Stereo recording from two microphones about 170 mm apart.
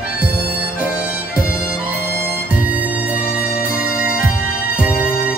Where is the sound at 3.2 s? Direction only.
60° left (ahead or behind).